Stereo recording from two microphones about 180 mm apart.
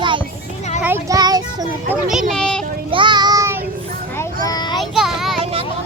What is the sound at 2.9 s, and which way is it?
Child singing, 25° right (ahead or behind).